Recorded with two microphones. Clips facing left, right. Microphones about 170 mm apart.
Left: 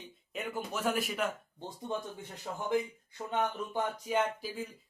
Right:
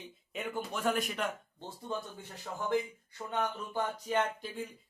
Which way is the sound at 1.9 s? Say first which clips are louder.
Left 1 dB; 20° left (ahead or behind).